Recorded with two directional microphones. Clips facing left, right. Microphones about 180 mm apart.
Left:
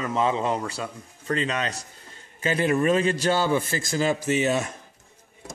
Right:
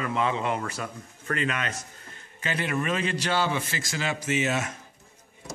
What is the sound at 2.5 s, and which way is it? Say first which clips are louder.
A man's voice: left 7 dB; 40° left (ahead or behind).